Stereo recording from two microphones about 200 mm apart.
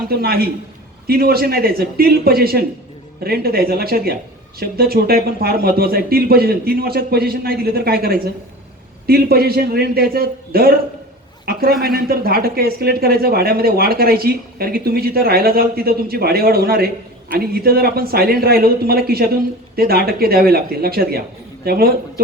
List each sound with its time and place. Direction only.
0.1 s speech: 50° right (ahead or behind)